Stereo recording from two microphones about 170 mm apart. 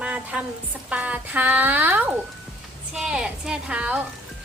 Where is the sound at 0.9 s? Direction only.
10° right (ahead or behind).